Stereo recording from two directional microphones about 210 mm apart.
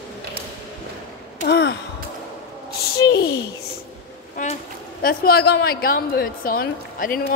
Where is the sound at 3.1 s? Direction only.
50° left (ahead or behind).